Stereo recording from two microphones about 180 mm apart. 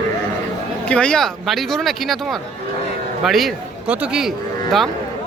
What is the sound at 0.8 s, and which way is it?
A man's voice, 5° left (ahead or behind).